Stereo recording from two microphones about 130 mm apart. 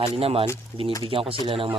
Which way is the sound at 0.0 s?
45° right (ahead or behind).